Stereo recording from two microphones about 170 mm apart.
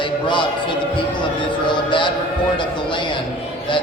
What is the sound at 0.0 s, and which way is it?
Speech, 30° left (ahead or behind).